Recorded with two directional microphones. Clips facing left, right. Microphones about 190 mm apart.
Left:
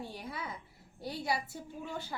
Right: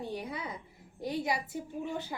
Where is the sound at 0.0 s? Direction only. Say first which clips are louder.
Right 5 dB; 20° right (ahead or behind).